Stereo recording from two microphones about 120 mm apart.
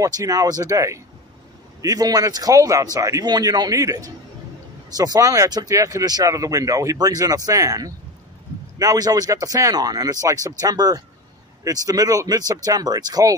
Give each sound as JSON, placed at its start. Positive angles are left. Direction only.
{"t": 0.0, "sound": "a man's voice", "side_deg": -30}